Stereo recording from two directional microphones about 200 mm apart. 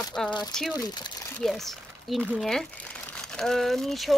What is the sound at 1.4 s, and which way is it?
Speech, centre (ahead or behind).